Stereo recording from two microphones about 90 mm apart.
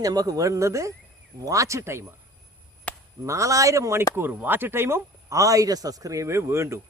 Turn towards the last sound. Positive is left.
turn(degrees=-30)  # may be behind; listen again after turning